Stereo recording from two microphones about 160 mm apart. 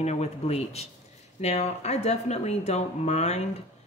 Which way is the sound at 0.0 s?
45° left (ahead or behind).